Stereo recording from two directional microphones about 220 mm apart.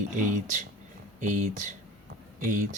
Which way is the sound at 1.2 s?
35° right (ahead or behind).